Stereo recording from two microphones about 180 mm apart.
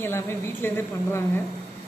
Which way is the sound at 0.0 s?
15° left (ahead or behind).